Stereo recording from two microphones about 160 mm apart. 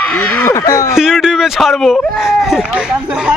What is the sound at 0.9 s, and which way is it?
Speech, 5° right (ahead or behind).